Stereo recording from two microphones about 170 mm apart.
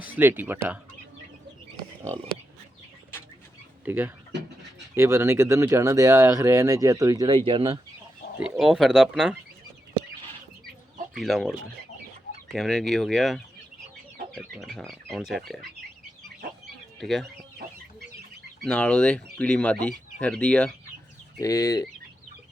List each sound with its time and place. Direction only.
0.0 s speech: 10° right (ahead or behind)
3.8 s speech: 10° right (ahead or behind); by 7.8 s 30° right (ahead or behind)
8.4 s speech: centre (ahead or behind)
11.1 s speech: centre (ahead or behind)
12.5 s speech: centre (ahead or behind)
17.0 s speech: centre (ahead or behind)
18.6 s speech: 5° left (ahead or behind)
21.4 s speech: 20° left (ahead or behind)